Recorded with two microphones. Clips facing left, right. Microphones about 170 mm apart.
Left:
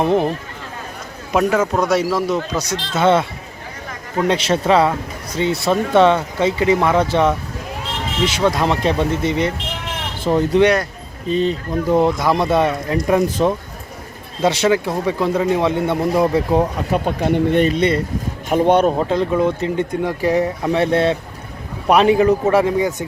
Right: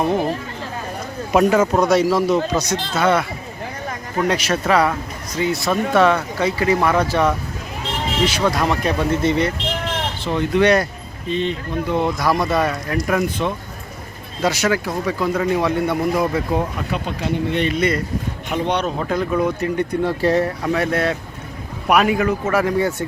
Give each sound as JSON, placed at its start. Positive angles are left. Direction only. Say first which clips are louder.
{"t": 1.3, "sound": "speech", "louder": "right 2 dB", "side_deg": -5}
{"t": 2.9, "sound": "speech", "louder": "left 3 dB", "side_deg": 25}
{"t": 10.2, "sound": "speech", "louder": "left 3 dB", "side_deg": 35}
{"t": 12.2, "sound": "speech", "louder": "left 2 dB", "side_deg": 25}
{"t": 14.4, "sound": "speech", "louder": "left 3 dB", "side_deg": 25}
{"t": 16.9, "sound": "speech", "louder": "left 7 dB", "side_deg": 50}
{"t": 17.7, "sound": "speech", "louder": "left 3 dB", "side_deg": 30}
{"t": 18.4, "sound": "speech", "louder": "left 8 dB", "side_deg": 50}
{"t": 18.9, "sound": "speech", "louder": "left 3 dB", "side_deg": 25}
{"t": 22.4, "sound": "speech", "louder": "left 3 dB", "side_deg": 20}